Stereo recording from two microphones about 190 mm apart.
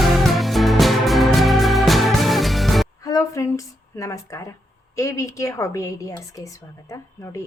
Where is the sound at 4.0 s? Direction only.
15° left (ahead or behind).